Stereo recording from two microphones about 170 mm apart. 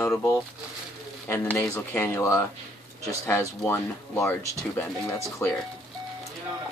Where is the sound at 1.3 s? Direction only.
15° left (ahead or behind).